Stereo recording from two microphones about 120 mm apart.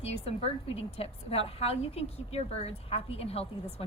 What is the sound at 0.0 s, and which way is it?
A woman's voice, 55° left (ahead or behind).